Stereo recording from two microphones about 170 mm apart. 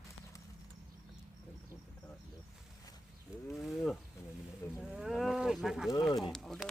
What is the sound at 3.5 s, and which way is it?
Ratchet, centre (ahead or behind).